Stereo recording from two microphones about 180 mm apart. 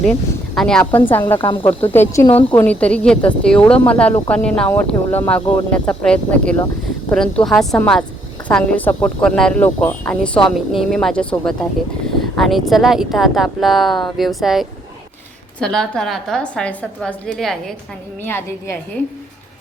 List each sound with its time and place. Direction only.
0.0 s a woman's voice: 5° left (ahead or behind)
1.4 s speech: 30° left (ahead or behind)
1.8 s a woman's voice: 10° left (ahead or behind)